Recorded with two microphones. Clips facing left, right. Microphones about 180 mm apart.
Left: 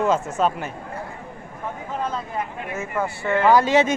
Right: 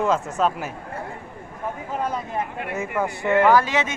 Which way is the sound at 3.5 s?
25° left (ahead or behind).